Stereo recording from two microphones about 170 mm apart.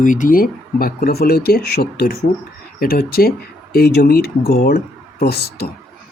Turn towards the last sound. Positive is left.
turn(degrees=70)  # may be behind; listen again after turning